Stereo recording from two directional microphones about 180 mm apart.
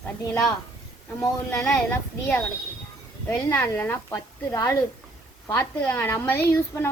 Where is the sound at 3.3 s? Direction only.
15° left (ahead or behind).